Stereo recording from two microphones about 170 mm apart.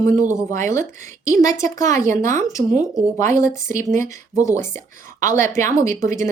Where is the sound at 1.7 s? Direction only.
20° left (ahead or behind).